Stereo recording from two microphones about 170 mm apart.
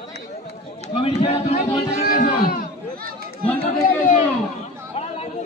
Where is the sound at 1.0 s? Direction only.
40° left (ahead or behind).